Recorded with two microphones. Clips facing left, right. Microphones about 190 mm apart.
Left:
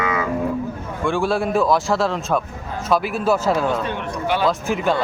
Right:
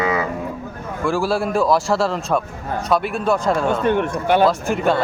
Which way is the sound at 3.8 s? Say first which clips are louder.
Right 6 dB; 55° right (ahead or behind).